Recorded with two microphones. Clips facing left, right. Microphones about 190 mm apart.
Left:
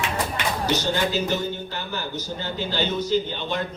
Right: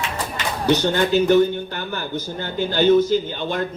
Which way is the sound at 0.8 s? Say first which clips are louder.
Right 6 dB; 60° right (ahead or behind).